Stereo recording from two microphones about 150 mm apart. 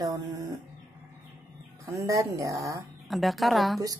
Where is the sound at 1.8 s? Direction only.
20° right (ahead or behind).